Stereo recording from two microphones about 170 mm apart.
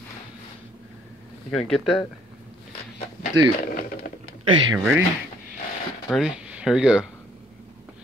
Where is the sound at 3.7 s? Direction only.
55° left (ahead or behind).